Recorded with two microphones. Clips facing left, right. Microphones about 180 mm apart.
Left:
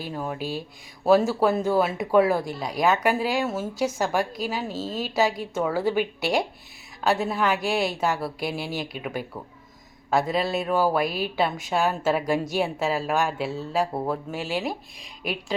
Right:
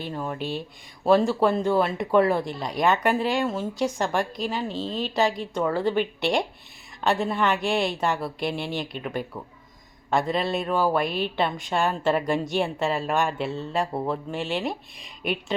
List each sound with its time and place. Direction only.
0.0 s speech: 5° left (ahead or behind)